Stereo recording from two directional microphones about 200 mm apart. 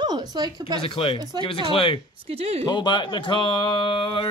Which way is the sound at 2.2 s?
30° right (ahead or behind).